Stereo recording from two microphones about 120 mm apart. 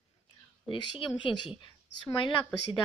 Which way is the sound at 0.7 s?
45° left (ahead or behind).